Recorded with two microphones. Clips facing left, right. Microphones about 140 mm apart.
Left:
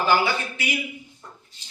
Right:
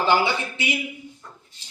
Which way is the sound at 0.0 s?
20° right (ahead or behind).